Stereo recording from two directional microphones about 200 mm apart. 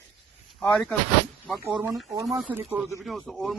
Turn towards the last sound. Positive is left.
turn(degrees=0)  # may be behind; listen again after turning